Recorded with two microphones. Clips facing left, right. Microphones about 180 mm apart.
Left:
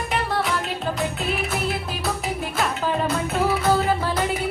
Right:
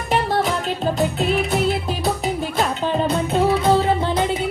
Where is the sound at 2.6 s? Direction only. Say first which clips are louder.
Right 3 dB; 30° right (ahead or behind).